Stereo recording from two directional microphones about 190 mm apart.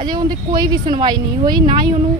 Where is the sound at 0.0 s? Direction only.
20° right (ahead or behind).